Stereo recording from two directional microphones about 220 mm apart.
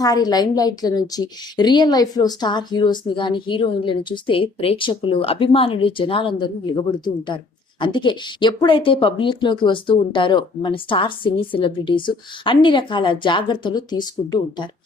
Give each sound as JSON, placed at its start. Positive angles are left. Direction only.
{"t": 0.0, "sound": "speech", "side_deg": 15}
{"t": 7.8, "sound": "speech", "side_deg": 20}